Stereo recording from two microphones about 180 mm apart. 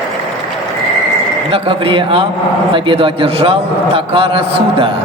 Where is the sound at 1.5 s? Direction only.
30° right (ahead or behind).